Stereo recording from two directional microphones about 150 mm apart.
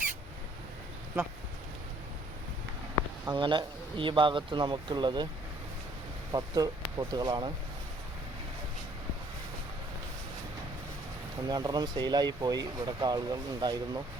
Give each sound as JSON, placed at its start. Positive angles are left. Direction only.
{"t": 3.2, "sound": "a man's voice", "side_deg": -35}
{"t": 6.3, "sound": "speech", "side_deg": -25}
{"t": 11.4, "sound": "speech", "side_deg": -25}